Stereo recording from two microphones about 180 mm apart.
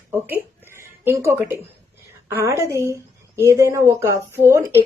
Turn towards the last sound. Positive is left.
turn(degrees=-15)  # may be behind; listen again after turning